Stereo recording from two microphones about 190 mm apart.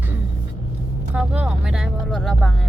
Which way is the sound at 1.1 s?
5° right (ahead or behind).